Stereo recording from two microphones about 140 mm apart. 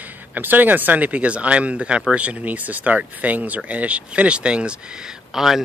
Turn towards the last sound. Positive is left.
turn(degrees=0)  # may be behind; listen again after turning